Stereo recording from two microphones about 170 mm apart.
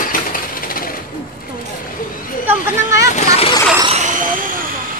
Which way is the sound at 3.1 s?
40° left (ahead or behind).